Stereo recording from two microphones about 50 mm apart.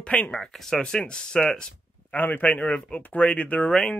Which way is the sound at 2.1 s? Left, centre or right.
Left.